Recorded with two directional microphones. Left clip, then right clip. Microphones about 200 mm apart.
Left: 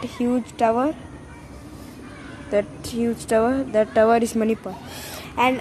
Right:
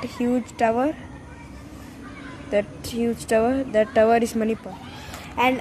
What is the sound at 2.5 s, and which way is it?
Speech, centre (ahead or behind).